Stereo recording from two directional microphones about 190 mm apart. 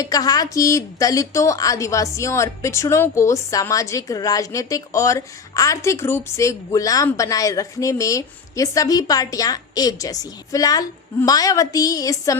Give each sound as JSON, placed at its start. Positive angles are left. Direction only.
{"t": 0.0, "sound": "a woman's voice", "side_deg": 20}